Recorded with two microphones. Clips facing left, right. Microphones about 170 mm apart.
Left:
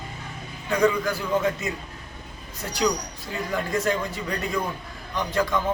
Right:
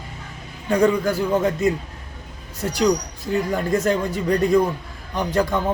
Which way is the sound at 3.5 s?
40° right (ahead or behind).